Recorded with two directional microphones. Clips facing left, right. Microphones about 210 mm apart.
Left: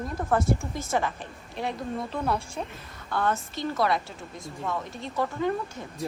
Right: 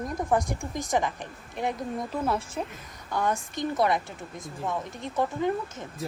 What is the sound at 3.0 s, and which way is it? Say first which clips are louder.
A woman's voice: even; 15° right (ahead or behind).